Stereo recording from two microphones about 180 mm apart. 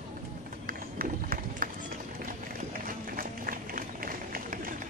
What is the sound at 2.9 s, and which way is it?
Run, 50° right (ahead or behind).